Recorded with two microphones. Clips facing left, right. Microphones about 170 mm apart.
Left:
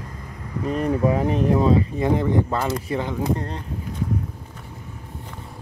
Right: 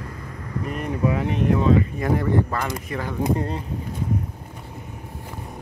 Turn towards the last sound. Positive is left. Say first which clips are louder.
# right 3 dB
turn(degrees=-5)  # may be behind; listen again after turning